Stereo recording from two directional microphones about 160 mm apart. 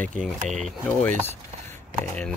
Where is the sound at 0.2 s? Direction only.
Centre (ahead or behind).